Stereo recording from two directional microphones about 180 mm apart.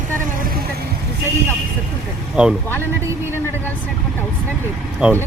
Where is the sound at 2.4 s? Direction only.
10° right (ahead or behind).